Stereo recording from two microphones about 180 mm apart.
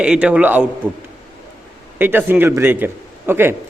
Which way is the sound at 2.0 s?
10° right (ahead or behind).